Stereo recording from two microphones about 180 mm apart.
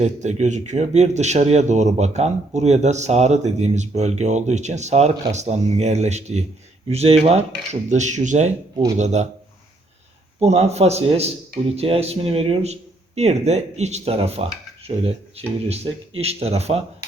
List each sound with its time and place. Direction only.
0.0 s speech: 40° right (ahead or behind)
10.4 s speech: 35° right (ahead or behind)